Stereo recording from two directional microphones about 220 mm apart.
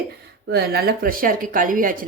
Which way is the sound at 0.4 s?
45° right (ahead or behind).